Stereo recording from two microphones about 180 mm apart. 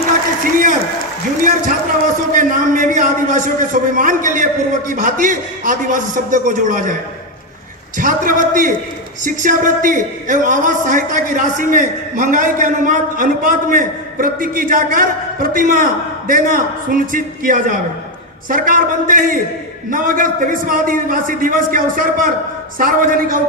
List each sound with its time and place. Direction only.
0.4 s a sound: 50° right (ahead or behind)
2.3 s a man's voice: 45° right (ahead or behind)
7.9 s a man's voice: 50° right (ahead or behind)